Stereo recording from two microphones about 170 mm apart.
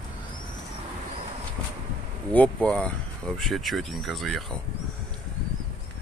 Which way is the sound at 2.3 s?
10° left (ahead or behind).